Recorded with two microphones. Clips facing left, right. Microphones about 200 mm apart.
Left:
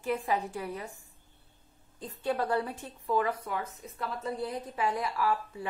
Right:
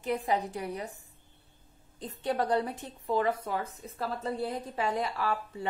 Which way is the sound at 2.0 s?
20° right (ahead or behind).